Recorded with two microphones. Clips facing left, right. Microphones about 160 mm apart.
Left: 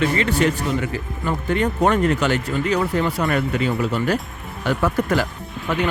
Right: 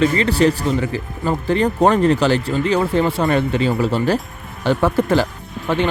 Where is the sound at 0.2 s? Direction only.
35° right (ahead or behind).